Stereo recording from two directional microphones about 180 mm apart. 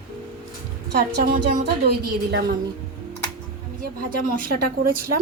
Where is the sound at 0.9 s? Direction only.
50° right (ahead or behind).